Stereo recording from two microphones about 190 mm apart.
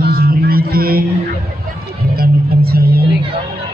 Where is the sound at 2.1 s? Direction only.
55° right (ahead or behind).